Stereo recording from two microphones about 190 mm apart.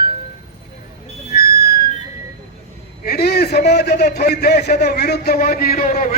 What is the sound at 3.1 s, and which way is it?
A man's voice, 55° left (ahead or behind).